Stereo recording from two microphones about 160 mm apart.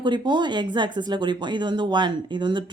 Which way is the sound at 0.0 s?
30° right (ahead or behind).